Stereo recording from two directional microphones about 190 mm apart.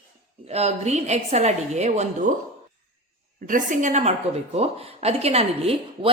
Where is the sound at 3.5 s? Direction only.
45° right (ahead or behind).